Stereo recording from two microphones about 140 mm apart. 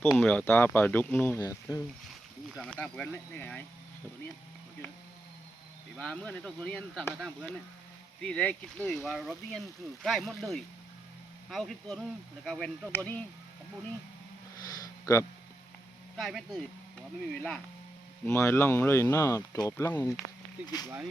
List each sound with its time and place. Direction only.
0.0 s speech: 5° left (ahead or behind)
2.6 s speech: 10° left (ahead or behind)
6.0 s speech: 5° left (ahead or behind)
14.7 s a sound: 20° left (ahead or behind)
16.1 s speech: centre (ahead or behind)
18.3 s speech: 15° left (ahead or behind)
20.7 s speech: 30° left (ahead or behind)